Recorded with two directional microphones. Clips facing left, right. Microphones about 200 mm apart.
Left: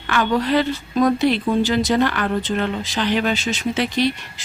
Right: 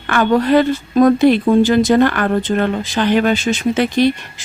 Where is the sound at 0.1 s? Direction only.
50° right (ahead or behind).